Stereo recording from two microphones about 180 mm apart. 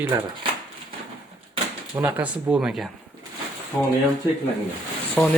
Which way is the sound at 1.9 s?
10° right (ahead or behind).